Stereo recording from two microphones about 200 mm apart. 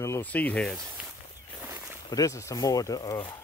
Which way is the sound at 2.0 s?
15° left (ahead or behind).